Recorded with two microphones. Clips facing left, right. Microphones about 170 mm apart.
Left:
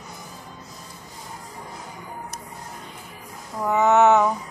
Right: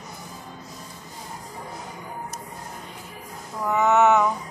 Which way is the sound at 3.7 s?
25° left (ahead or behind).